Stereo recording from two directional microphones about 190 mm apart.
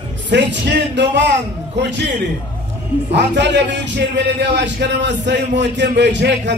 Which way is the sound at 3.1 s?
65° right (ahead or behind).